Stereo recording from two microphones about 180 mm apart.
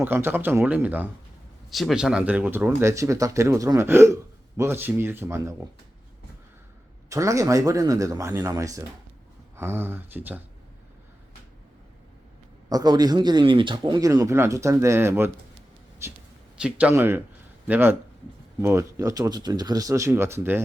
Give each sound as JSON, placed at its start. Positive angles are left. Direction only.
{"t": 0.0, "sound": "speech", "side_deg": -10}
{"t": 7.1, "sound": "speech", "side_deg": -15}
{"t": 12.6, "sound": "a man's voice", "side_deg": -20}
{"t": 14.1, "sound": "speech", "side_deg": -15}